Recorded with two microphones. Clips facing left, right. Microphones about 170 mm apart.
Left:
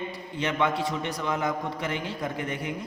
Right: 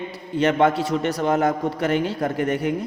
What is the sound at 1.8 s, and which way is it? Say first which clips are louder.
Speech: right 10 dB; 70° right (ahead or behind).